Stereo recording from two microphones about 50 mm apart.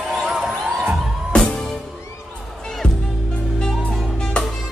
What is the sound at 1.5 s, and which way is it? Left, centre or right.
Music, centre.